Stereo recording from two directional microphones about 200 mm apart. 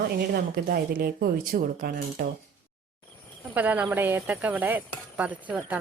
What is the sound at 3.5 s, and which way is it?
Speech, 10° right (ahead or behind).